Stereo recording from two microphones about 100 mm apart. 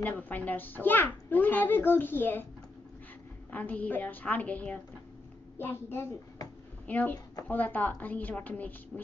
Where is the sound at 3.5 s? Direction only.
15° left (ahead or behind).